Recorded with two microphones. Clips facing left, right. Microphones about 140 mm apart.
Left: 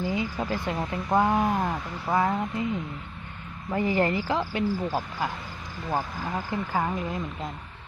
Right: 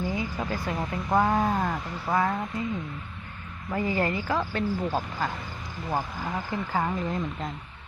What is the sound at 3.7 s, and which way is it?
Speech, 20° left (ahead or behind).